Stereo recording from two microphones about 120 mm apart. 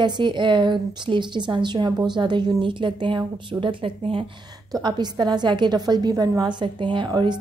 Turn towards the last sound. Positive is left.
turn(degrees=-40)  # may be behind; listen again after turning